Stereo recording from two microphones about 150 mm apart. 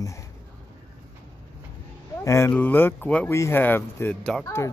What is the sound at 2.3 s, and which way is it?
Speech, 15° left (ahead or behind).